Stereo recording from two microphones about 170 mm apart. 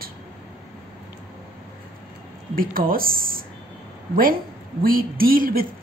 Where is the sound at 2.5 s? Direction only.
55° right (ahead or behind).